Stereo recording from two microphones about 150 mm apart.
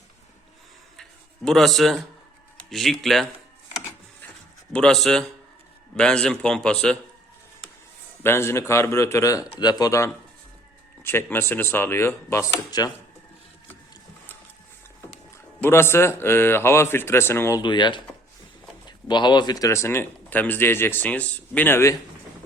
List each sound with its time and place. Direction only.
1.5 s speech: centre (ahead or behind)
4.7 s speech: 5° left (ahead or behind)
8.2 s speech: 15° left (ahead or behind)
15.6 s speech: 15° left (ahead or behind)
17.6 s speech: 30° left (ahead or behind); by 21.9 s 15° left (ahead or behind)